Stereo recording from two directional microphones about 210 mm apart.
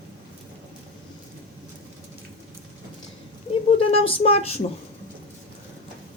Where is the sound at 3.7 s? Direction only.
25° left (ahead or behind).